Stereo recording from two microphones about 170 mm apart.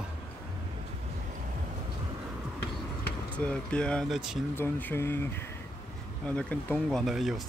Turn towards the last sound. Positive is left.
turn(degrees=0)  # may be behind; listen again after turning